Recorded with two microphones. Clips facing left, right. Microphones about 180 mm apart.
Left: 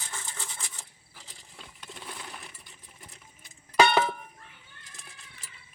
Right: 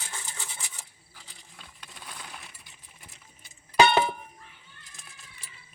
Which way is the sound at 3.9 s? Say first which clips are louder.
Right 1 dB; 15° right (ahead or behind).